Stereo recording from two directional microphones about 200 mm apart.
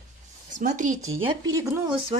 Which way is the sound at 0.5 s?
40° right (ahead or behind).